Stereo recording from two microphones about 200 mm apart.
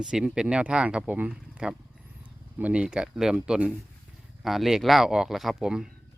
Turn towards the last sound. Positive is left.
turn(degrees=-5)  # may be behind; listen again after turning